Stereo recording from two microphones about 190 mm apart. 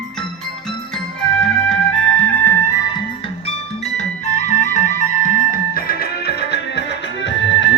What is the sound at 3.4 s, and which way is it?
Music, 35° left (ahead or behind).